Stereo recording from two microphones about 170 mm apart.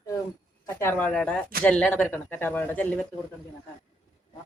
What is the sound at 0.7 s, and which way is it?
Speech, 15° left (ahead or behind).